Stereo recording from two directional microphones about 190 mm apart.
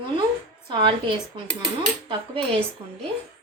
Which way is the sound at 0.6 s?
25° right (ahead or behind).